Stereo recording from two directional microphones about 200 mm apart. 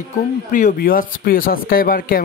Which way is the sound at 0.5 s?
40° left (ahead or behind).